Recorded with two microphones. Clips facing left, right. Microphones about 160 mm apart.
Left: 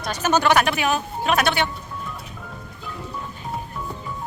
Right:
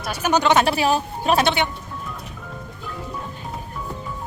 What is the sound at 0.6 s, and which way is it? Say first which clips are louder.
Speech: right 3 dB; 35° right (ahead or behind).